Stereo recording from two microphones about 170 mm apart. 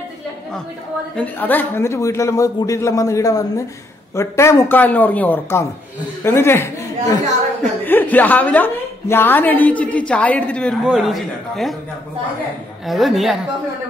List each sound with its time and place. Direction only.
1.1 s a woman's voice: 10° left (ahead or behind)
12.8 s a man's voice: centre (ahead or behind)